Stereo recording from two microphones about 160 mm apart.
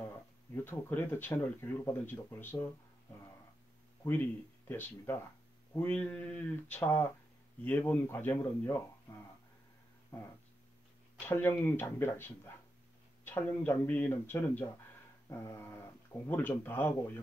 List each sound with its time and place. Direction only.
0.7 s speech: 10° left (ahead or behind)
4.0 s speech: 10° left (ahead or behind)
11.1 s speech: 15° left (ahead or behind)